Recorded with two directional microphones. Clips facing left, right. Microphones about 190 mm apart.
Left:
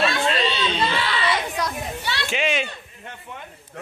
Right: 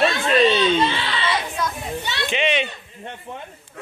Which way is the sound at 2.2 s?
5° left (ahead or behind).